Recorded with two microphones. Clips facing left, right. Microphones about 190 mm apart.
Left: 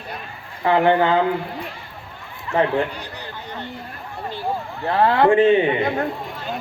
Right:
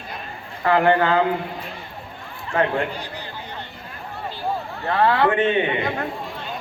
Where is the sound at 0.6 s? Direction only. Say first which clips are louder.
Left 1 dB; 20° left (ahead or behind).